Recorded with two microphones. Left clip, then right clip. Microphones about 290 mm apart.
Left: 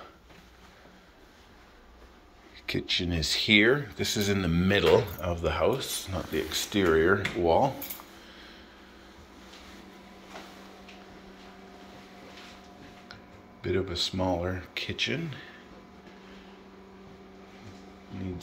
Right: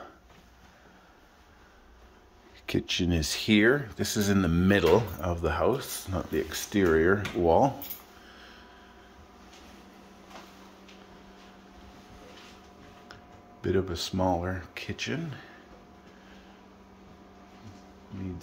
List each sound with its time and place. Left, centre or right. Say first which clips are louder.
2.6 s speech: even; right
13.1 s speech: left 1 dB; right